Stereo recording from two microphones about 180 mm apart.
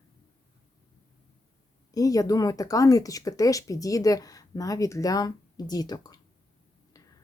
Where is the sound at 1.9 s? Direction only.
20° left (ahead or behind).